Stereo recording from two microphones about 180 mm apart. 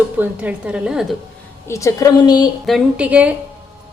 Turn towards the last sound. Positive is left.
turn(degrees=-5)  # may be behind; listen again after turning